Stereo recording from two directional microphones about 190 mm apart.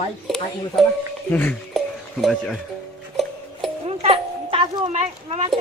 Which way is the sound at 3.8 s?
30° right (ahead or behind).